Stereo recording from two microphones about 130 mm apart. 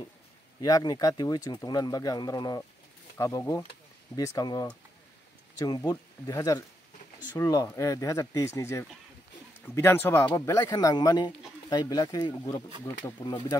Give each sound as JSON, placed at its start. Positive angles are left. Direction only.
{"t": 0.6, "sound": "speech", "side_deg": 30}